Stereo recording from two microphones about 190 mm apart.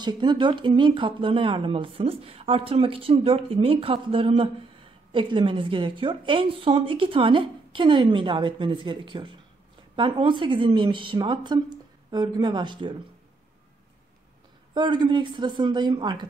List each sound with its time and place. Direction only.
0.0 s speech: 25° right (ahead or behind)
14.7 s speech: 25° right (ahead or behind)